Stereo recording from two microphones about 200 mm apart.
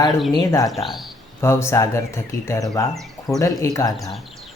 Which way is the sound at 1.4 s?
15° left (ahead or behind).